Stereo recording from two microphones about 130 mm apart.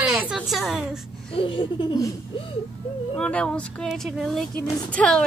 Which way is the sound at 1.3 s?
45° left (ahead or behind).